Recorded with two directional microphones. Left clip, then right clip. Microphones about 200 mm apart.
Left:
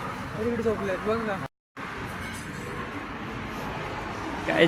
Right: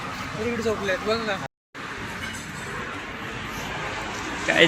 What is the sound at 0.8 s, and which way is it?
Speech, 10° left (ahead or behind).